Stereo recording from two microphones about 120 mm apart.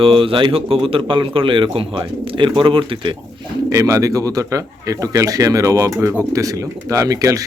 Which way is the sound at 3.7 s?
25° right (ahead or behind).